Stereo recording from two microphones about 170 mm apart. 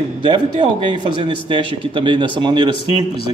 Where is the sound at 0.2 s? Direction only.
30° right (ahead or behind).